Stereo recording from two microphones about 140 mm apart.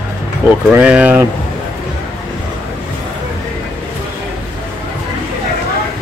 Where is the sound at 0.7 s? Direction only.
10° right (ahead or behind).